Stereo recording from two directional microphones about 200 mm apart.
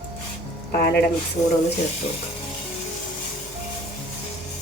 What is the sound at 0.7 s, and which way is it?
Speech, 50° left (ahead or behind).